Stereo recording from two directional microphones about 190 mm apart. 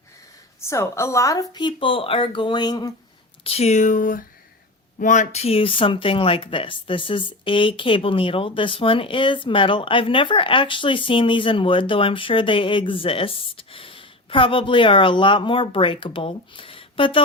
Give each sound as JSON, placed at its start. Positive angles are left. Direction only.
{"t": 0.6, "sound": "speech", "side_deg": 15}
{"t": 3.4, "sound": "speech", "side_deg": 35}